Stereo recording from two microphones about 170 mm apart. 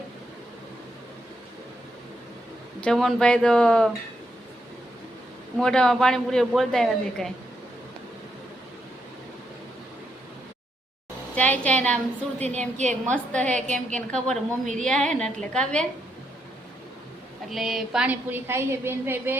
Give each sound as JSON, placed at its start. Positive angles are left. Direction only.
{"t": 2.8, "sound": "a woman's voice", "side_deg": 5}
{"t": 5.5, "sound": "a woman's voice", "side_deg": 5}
{"t": 11.3, "sound": "a woman's voice", "side_deg": 10}
{"t": 12.4, "sound": "a woman's voice", "side_deg": -40}
{"t": 13.1, "sound": "a woman's voice", "side_deg": 5}
{"t": 17.5, "sound": "a woman's voice", "side_deg": 0}